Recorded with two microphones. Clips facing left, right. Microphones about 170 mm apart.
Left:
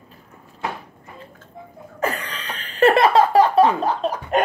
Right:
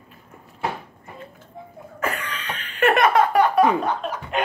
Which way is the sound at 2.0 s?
35° left (ahead or behind).